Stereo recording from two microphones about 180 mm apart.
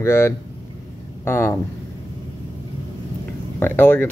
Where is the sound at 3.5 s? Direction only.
10° left (ahead or behind).